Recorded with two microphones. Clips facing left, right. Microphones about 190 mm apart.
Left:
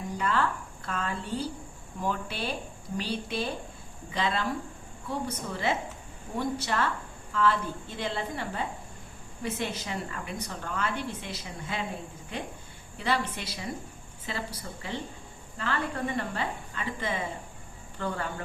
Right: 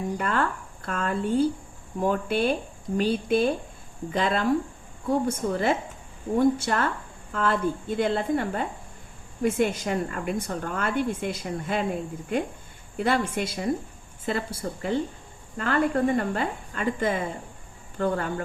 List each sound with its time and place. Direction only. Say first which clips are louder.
0.2 s a woman's voice: right 2 dB; 50° right (ahead or behind)
13.0 s a woman's voice: right 6 dB; 50° right (ahead or behind)